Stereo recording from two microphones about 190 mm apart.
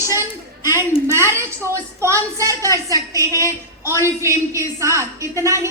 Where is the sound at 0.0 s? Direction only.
15° right (ahead or behind).